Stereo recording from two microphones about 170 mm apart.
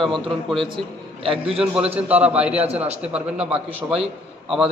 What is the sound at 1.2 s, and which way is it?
Speech, 30° right (ahead or behind).